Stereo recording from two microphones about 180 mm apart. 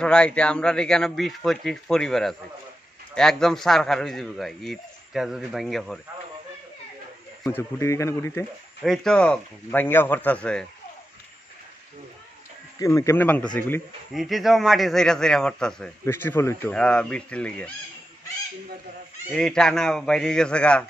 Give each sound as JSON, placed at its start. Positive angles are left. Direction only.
{"t": 0.0, "sound": "a man's voice", "side_deg": 5}
{"t": 7.4, "sound": "speech", "side_deg": 15}
{"t": 8.8, "sound": "speech", "side_deg": 0}
{"t": 12.7, "sound": "speech", "side_deg": 20}
{"t": 14.1, "sound": "a man's voice", "side_deg": 0}
{"t": 19.3, "sound": "a man's voice", "side_deg": 5}